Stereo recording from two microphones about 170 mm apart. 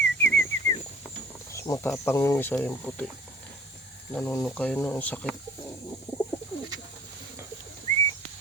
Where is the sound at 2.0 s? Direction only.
15° left (ahead or behind).